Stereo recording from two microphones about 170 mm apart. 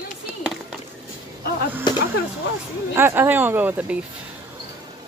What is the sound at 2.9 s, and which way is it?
Speech, 15° right (ahead or behind).